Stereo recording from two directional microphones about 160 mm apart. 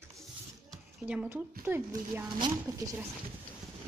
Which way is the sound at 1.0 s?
5° right (ahead or behind).